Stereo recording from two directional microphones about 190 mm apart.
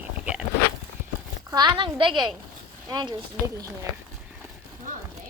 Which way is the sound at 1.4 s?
25° right (ahead or behind).